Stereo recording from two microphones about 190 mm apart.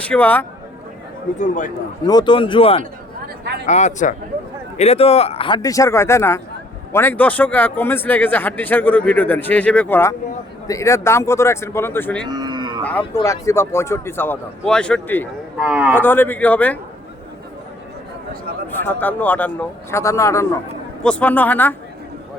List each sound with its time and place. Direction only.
0.0 s speech: 10° left (ahead or behind)
1.4 s a man's voice: 40° left (ahead or behind)
2.0 s speech: 25° left (ahead or behind)
3.4 s speech: 60° right (ahead or behind)
3.7 s a man's voice: 40° left (ahead or behind); by 12.2 s 10° left (ahead or behind)
12.2 s cattle: 20° right (ahead or behind)
12.8 s a man's voice: 5° left (ahead or behind)
15.5 s speech: 5° right (ahead or behind)
16.0 s speech: 10° left (ahead or behind)
18.8 s speech: 10° left (ahead or behind)